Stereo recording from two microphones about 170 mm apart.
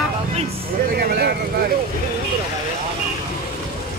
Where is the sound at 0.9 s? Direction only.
65° right (ahead or behind).